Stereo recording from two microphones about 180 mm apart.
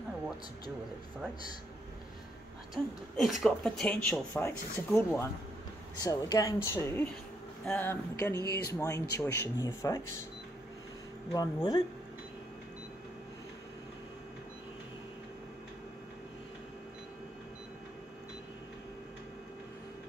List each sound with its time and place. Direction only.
2.7 s speech: centre (ahead or behind)
6.0 s speech: 20° left (ahead or behind)
11.3 s speech: 20° left (ahead or behind)